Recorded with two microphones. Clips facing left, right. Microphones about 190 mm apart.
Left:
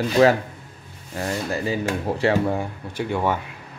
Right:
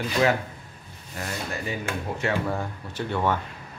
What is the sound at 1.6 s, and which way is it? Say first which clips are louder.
Speech: left 6 dB; 35° left (ahead or behind).